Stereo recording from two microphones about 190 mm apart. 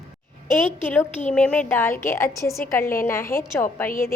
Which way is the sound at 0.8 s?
10° left (ahead or behind).